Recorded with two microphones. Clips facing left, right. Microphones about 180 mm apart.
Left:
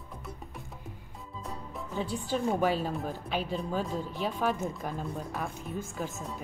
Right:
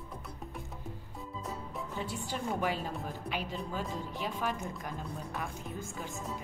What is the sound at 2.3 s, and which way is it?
Speech, 15° right (ahead or behind).